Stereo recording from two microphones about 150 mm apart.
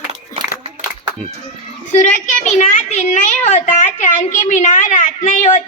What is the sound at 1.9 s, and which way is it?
A woman's voice, 55° left (ahead or behind).